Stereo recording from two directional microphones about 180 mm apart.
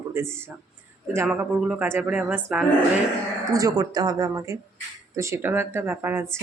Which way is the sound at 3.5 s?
20° right (ahead or behind).